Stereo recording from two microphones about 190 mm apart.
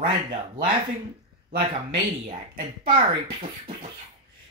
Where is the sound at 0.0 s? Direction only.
30° right (ahead or behind).